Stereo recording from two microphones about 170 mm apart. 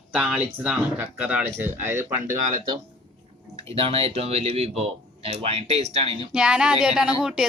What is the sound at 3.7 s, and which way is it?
Speech, 35° right (ahead or behind).